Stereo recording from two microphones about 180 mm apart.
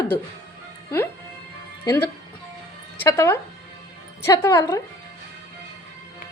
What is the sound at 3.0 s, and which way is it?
A woman's voice, 15° left (ahead or behind).